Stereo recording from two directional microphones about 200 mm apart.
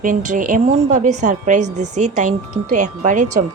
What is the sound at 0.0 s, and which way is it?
A woman's voice, 40° right (ahead or behind).